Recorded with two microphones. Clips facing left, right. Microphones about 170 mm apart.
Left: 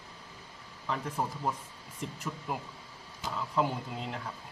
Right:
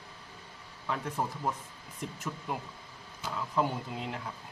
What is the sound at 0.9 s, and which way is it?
Speech, centre (ahead or behind).